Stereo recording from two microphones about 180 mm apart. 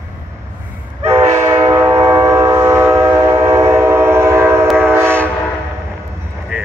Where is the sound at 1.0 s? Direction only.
35° right (ahead or behind).